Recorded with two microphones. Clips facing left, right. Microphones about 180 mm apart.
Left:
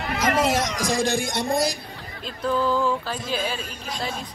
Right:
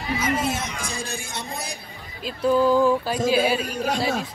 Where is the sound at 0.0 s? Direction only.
70° left (ahead or behind); by 1.7 s 90° left.